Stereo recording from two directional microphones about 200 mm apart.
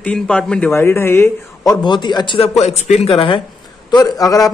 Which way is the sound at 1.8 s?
20° left (ahead or behind).